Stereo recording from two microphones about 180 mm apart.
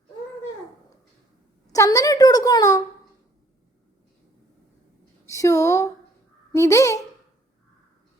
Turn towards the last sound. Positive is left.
turn(degrees=15)  # may be behind; listen again after turning